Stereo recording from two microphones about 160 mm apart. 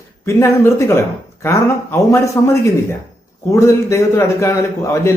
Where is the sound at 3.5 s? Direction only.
20° left (ahead or behind).